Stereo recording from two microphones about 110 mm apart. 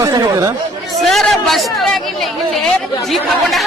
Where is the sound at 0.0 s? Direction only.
35° right (ahead or behind).